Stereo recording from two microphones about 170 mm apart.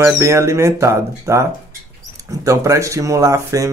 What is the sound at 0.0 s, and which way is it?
Speech, 15° right (ahead or behind).